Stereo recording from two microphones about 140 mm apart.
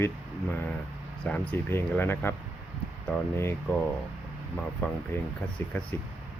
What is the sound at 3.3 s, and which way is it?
Speech, 15° left (ahead or behind).